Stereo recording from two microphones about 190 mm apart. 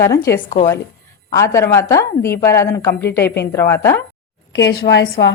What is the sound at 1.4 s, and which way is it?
A woman's voice, 15° left (ahead or behind).